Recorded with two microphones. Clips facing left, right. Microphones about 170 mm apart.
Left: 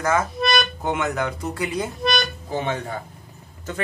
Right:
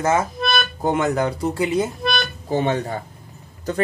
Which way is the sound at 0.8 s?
35° right (ahead or behind).